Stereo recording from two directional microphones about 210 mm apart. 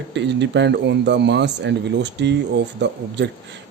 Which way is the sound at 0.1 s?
55° right (ahead or behind).